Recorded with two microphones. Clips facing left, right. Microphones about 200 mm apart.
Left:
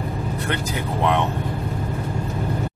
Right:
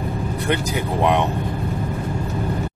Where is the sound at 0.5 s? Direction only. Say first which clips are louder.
Right 6 dB; 15° right (ahead or behind).